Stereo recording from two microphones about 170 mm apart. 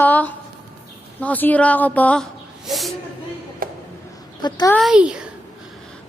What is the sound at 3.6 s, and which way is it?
Music, 55° right (ahead or behind).